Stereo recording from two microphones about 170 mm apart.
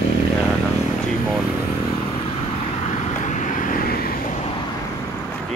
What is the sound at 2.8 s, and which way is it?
Vehicle, 45° left (ahead or behind).